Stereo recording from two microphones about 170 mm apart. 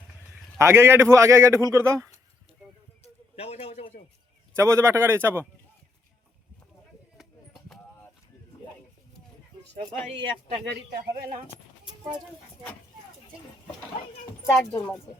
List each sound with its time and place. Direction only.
0.6 s a man's voice: 15° right (ahead or behind)
3.0 s a sound: 35° left (ahead or behind)
4.5 s a man's voice: 15° right (ahead or behind)
10.8 s a man's voice: 70° right (ahead or behind)
14.4 s speech: 20° left (ahead or behind)